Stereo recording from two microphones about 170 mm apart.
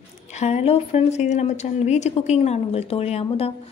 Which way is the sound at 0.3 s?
40° left (ahead or behind).